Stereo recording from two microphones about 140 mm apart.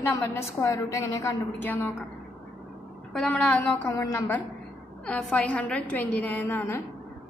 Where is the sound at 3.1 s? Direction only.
5° left (ahead or behind).